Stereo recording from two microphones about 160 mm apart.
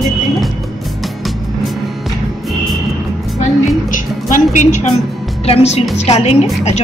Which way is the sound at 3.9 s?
50° left (ahead or behind).